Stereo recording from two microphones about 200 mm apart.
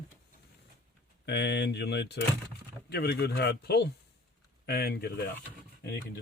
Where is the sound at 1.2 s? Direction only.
55° left (ahead or behind).